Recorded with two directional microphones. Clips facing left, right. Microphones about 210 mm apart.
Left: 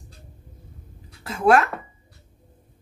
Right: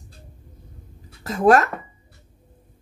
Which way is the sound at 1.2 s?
40° right (ahead or behind).